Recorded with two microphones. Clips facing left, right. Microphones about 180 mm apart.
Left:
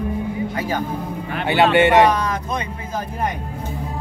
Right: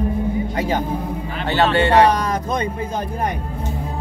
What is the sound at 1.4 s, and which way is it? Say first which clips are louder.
Speech: left 2 dB; 15° left (ahead or behind).